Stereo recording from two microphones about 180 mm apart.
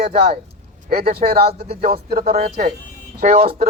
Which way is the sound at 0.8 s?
55° right (ahead or behind).